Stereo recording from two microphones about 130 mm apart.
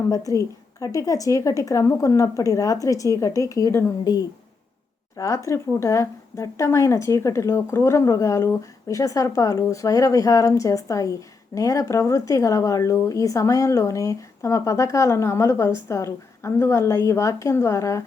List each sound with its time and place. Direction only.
0.1 s speech: 25° left (ahead or behind)
5.1 s speech: 25° left (ahead or behind)